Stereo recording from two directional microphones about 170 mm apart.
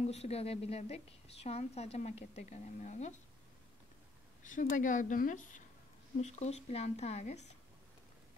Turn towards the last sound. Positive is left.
turn(degrees=40)  # may be behind; listen again after turning